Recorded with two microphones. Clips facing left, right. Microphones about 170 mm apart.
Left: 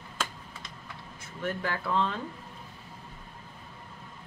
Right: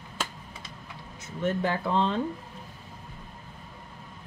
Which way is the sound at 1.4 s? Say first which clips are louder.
Right 5 dB; 20° right (ahead or behind).